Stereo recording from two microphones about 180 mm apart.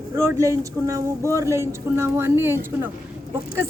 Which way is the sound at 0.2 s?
15° right (ahead or behind).